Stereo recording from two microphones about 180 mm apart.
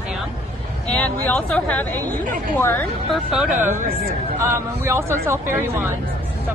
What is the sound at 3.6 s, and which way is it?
Speech, 50° right (ahead or behind).